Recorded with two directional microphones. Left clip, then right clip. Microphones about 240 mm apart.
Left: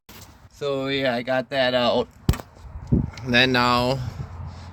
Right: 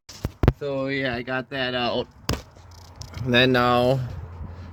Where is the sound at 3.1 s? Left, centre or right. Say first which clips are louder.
Even; right.